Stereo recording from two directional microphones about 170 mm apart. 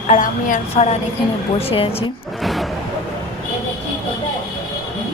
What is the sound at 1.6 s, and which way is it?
Speech, 35° left (ahead or behind).